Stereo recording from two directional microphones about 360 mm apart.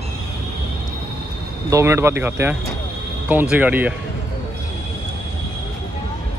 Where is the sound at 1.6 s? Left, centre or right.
Centre.